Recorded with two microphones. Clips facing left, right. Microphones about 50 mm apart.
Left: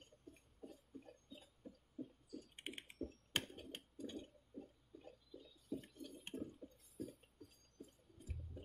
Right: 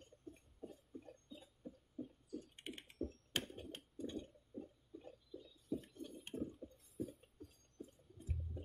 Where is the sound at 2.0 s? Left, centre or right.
Right.